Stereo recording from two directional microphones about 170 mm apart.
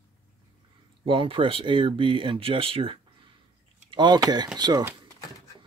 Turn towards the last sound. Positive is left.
turn(degrees=-25)  # may be behind; listen again after turning